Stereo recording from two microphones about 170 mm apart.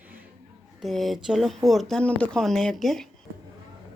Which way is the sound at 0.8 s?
Centre (ahead or behind).